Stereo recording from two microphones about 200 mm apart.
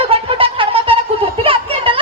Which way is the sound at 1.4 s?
25° right (ahead or behind).